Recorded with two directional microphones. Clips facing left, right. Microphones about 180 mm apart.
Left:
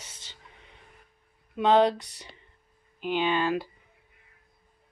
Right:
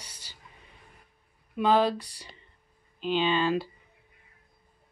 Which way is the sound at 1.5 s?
20° left (ahead or behind).